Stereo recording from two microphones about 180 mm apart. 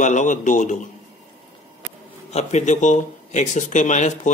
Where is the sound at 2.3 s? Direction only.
40° left (ahead or behind).